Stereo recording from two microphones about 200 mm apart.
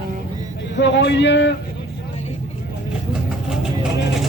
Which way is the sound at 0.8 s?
60° left (ahead or behind).